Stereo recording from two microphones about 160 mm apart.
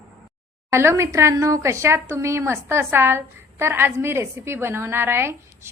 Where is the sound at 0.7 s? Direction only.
15° right (ahead or behind).